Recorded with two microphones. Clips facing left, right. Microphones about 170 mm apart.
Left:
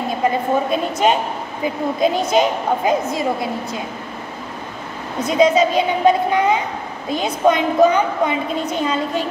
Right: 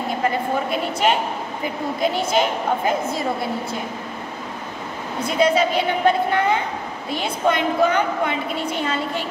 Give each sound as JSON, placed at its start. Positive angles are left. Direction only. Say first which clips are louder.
{"t": 0.2, "sound": "a woman's voice", "louder": "left 5 dB", "side_deg": 20}
{"t": 5.2, "sound": "a woman's voice", "louder": "left 4 dB", "side_deg": 20}